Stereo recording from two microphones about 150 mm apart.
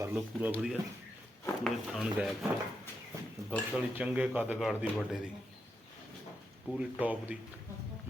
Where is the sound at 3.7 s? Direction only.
10° right (ahead or behind).